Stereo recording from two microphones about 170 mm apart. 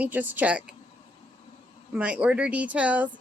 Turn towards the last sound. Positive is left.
turn(degrees=-10)  # may be behind; listen again after turning